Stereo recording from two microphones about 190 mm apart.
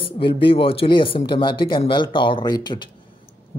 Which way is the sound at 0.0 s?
25° left (ahead or behind).